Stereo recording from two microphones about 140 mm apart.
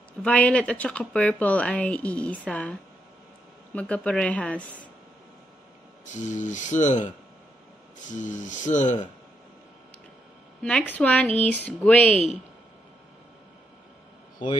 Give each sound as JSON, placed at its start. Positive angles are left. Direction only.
{"t": 0.2, "sound": "speech", "side_deg": 10}
{"t": 6.0, "sound": "speech", "side_deg": 60}
{"t": 10.6, "sound": "speech", "side_deg": 10}